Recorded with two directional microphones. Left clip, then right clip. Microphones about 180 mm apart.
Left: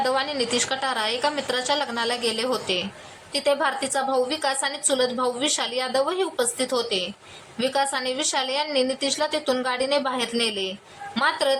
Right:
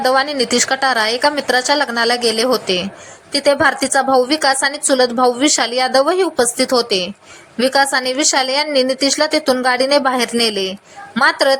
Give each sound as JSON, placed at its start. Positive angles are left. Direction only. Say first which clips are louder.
{"t": 0.0, "sound": "a woman's voice", "louder": "right 9 dB", "side_deg": -30}